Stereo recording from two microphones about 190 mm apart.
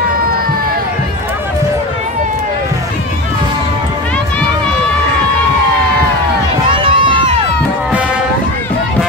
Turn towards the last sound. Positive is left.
turn(degrees=-25)  # may be behind; listen again after turning